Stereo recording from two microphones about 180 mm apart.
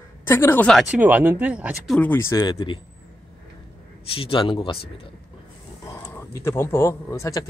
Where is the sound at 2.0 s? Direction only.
10° left (ahead or behind).